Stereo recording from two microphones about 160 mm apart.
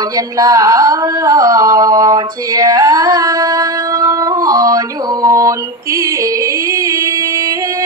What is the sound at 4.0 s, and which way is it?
Music, 20° right (ahead or behind).